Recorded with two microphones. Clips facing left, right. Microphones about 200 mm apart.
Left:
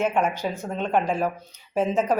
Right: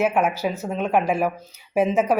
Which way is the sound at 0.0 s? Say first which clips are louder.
Right 3 dB; 5° right (ahead or behind).